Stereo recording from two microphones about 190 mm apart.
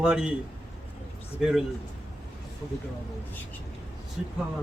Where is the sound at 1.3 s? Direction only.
Centre (ahead or behind).